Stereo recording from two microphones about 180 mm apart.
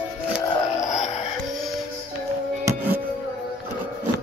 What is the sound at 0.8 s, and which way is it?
Music, 40° left (ahead or behind).